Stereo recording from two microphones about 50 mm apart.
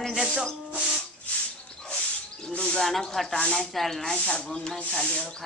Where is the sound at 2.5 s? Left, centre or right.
Centre.